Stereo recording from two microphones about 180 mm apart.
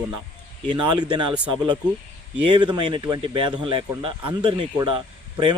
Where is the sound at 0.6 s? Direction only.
25° right (ahead or behind).